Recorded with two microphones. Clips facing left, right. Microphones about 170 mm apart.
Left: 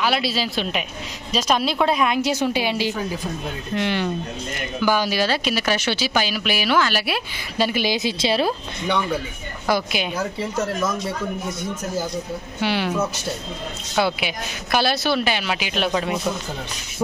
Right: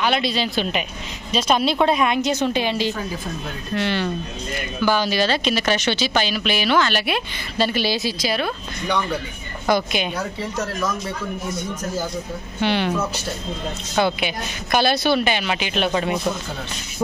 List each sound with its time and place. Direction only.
0.0 s a woman's voice: 5° left (ahead or behind)
8.2 s a woman's voice: 30° left (ahead or behind)
8.9 s a woman's voice: 5° left (ahead or behind)
12.5 s a woman's voice: 5° left (ahead or behind)